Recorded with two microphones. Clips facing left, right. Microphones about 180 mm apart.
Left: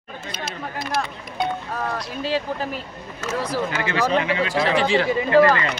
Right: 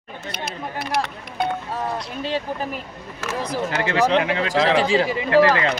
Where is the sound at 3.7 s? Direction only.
60° right (ahead or behind).